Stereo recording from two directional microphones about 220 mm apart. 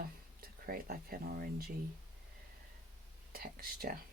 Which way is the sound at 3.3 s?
40° right (ahead or behind).